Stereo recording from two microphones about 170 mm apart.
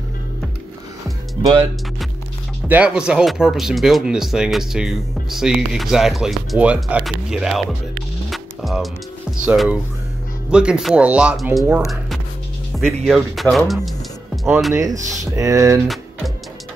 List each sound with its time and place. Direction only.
1.4 s speech: 25° right (ahead or behind)
2.7 s speech: 5° right (ahead or behind)
8.3 s music: centre (ahead or behind)
9.4 s speech: 5° right (ahead or behind)
13.8 s music: centre (ahead or behind)
14.7 s speech: 20° right (ahead or behind)